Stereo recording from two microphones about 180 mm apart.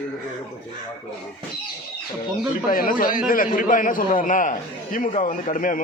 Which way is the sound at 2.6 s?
50° left (ahead or behind).